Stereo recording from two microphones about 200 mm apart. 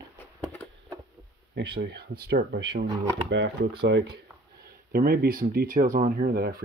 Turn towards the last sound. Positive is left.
turn(degrees=-50)  # may be behind; listen again after turning